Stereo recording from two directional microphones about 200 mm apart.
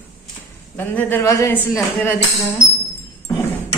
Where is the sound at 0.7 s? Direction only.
10° left (ahead or behind).